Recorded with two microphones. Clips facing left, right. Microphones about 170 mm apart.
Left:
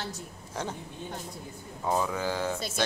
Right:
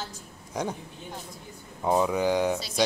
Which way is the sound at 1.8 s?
20° right (ahead or behind).